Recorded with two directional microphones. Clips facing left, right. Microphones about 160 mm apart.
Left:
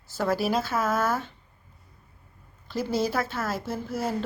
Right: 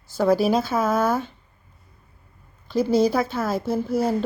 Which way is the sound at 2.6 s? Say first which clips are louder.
Right 8 dB; 15° right (ahead or behind).